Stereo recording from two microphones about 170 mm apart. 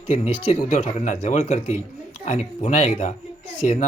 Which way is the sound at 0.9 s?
45° left (ahead or behind).